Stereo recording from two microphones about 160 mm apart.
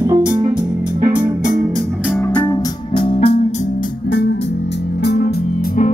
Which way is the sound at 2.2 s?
15° left (ahead or behind).